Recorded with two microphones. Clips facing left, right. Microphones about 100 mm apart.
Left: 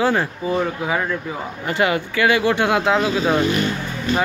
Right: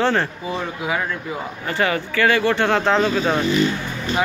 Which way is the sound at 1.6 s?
15° left (ahead or behind).